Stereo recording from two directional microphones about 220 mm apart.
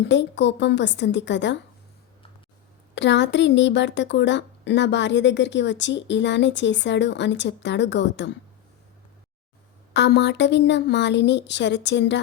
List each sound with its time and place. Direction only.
0.0 s speech: 55° left (ahead or behind)
2.9 s speech: 55° left (ahead or behind)
9.9 s speech: 50° left (ahead or behind)